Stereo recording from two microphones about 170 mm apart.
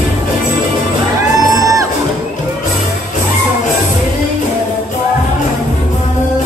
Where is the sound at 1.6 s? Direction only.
20° right (ahead or behind).